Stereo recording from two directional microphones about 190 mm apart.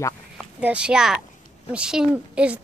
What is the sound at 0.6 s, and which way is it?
A woman's voice, 5° right (ahead or behind).